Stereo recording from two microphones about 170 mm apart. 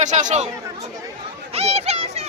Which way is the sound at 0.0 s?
45° right (ahead or behind).